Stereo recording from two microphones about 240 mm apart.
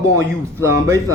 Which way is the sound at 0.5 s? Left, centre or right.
Centre.